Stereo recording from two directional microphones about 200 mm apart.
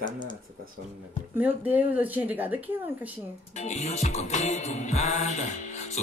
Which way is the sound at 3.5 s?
35° left (ahead or behind).